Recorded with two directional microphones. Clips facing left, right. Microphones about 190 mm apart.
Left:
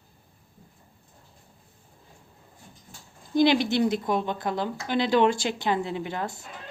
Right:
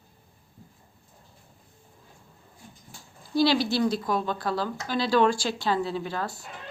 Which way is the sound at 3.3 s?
20° left (ahead or behind).